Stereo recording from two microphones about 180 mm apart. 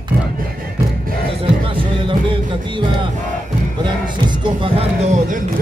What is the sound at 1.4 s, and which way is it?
Music, 30° right (ahead or behind).